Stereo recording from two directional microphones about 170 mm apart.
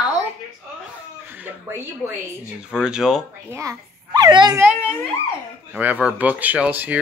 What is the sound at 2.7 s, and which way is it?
Speech, 5° right (ahead or behind).